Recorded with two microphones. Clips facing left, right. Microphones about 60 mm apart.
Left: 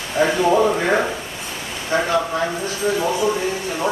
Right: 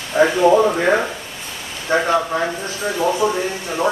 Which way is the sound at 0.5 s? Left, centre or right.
Centre.